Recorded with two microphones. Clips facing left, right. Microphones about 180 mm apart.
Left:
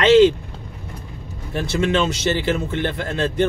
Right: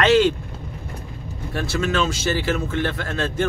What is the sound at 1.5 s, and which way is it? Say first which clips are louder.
Speech: left 3 dB; 25° left (ahead or behind).